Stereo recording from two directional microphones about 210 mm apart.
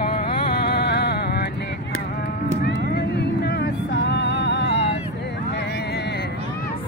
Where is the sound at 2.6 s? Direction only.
50° left (ahead or behind).